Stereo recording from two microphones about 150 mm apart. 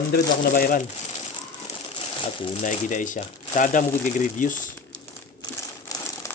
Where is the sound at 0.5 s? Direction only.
65° left (ahead or behind).